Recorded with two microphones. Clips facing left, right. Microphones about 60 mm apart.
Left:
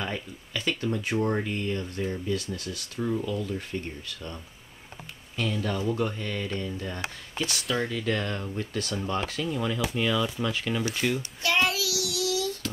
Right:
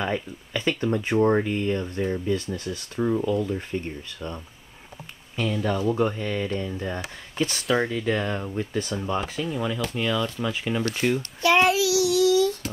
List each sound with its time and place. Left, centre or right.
0.0 s speech: centre
1.4 s speech: centre
9.8 s speech: centre
10.4 s speech: centre
11.4 s child singing: right